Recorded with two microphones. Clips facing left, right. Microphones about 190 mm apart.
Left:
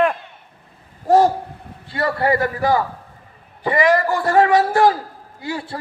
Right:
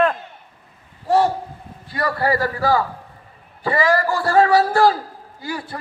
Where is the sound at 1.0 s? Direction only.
45° left (ahead or behind).